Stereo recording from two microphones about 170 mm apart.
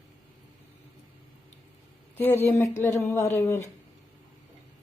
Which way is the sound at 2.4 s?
15° left (ahead or behind).